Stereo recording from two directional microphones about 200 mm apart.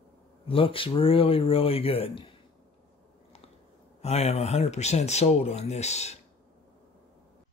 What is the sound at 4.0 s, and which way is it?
Speech, 30° left (ahead or behind).